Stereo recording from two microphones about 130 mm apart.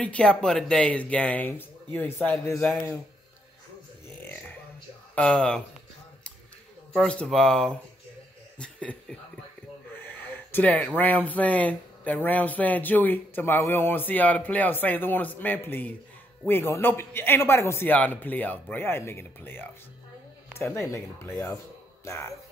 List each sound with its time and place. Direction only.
0.0 s speech: 10° left (ahead or behind)
5.1 s speech: 5° left (ahead or behind)
6.9 s speech: 10° left (ahead or behind)
9.9 s a sound: 15° left (ahead or behind)
11.0 s speech: 10° left (ahead or behind)